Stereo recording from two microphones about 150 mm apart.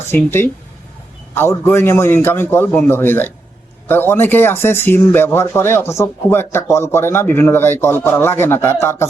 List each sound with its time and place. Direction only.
0.1 s speech: 15° left (ahead or behind)